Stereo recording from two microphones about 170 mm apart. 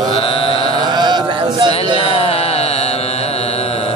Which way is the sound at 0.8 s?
25° right (ahead or behind).